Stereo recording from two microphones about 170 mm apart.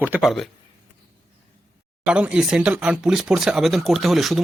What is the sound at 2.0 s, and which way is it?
Speech, 5° right (ahead or behind).